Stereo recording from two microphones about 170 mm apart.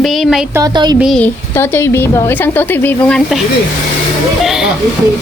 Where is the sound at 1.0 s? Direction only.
5° left (ahead or behind).